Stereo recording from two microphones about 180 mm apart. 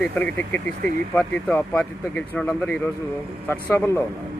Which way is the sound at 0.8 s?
50° right (ahead or behind).